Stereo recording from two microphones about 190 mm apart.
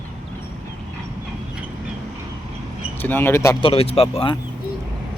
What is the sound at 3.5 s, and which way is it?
Speech, 30° left (ahead or behind).